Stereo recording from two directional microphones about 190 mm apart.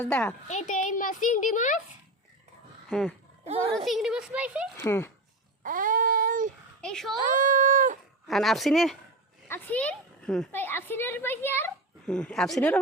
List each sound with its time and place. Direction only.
0.0 s speech: 5° left (ahead or behind)
0.4 s a child's voice: 40° left (ahead or behind)
2.9 s speech: 5° left (ahead or behind)
4.8 s speech: 10° left (ahead or behind)
5.6 s a sound: 45° right (ahead or behind)
6.8 s speech: centre (ahead or behind)
7.3 s a sound: 40° right (ahead or behind)
8.3 s a child's voice: centre (ahead or behind)